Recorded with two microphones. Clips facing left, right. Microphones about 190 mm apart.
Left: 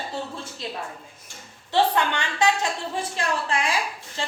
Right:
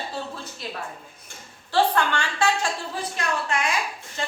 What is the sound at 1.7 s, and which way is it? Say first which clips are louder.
Speech: even; 20° left (ahead or behind).